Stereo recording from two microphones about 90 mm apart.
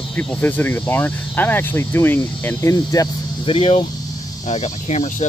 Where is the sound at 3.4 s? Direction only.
85° left.